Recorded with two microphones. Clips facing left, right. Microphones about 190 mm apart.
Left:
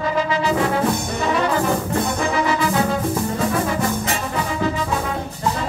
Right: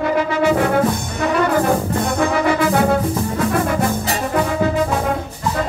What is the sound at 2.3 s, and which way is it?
Brass instrument, 55° right (ahead or behind).